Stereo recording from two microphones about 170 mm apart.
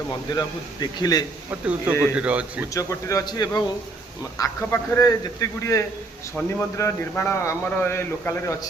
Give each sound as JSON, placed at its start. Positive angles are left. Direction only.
{"t": 0.1, "sound": "speech", "side_deg": 25}
{"t": 1.5, "sound": "a man's voice", "side_deg": -5}
{"t": 2.7, "sound": "a man's voice", "side_deg": 20}